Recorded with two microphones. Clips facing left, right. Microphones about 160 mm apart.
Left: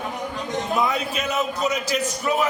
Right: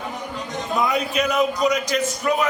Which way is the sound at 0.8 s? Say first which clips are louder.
Right 5 dB; centre (ahead or behind).